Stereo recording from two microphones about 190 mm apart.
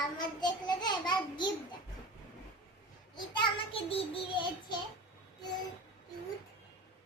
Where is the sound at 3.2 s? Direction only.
25° left (ahead or behind).